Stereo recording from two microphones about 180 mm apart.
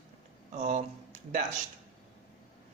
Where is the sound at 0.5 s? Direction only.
40° right (ahead or behind).